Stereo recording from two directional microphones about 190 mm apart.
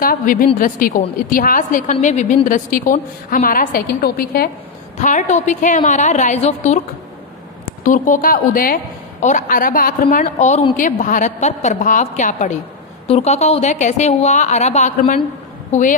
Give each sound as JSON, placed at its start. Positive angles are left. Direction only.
{"t": 0.0, "sound": "a sound", "side_deg": 45}
{"t": 0.6, "sound": "a woman's voice", "side_deg": 45}
{"t": 4.9, "sound": "a woman's voice", "side_deg": 40}